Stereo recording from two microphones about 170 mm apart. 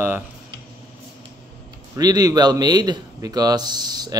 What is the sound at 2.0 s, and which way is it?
A man's voice, 20° right (ahead or behind).